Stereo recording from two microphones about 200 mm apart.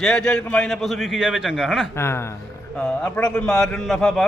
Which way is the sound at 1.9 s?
15° left (ahead or behind).